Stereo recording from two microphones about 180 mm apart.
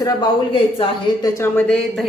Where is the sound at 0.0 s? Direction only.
20° left (ahead or behind).